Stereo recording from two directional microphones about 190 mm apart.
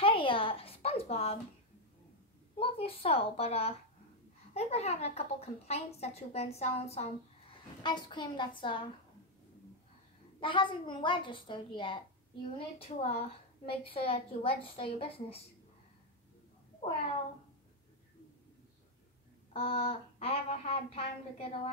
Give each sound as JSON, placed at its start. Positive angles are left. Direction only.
{"t": 0.0, "sound": "a sound", "side_deg": 30}
{"t": 2.6, "sound": "a woman's voice", "side_deg": 30}
{"t": 10.4, "sound": "a woman's voice", "side_deg": 25}
{"t": 19.5, "sound": "a woman's voice", "side_deg": 30}